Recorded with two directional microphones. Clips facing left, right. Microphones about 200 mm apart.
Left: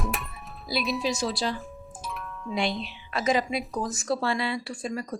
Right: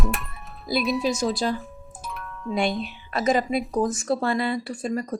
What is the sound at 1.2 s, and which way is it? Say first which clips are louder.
Speech: right 4 dB; 45° right (ahead or behind).